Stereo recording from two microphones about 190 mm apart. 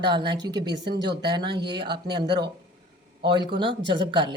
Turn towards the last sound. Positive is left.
turn(degrees=-25)  # may be behind; listen again after turning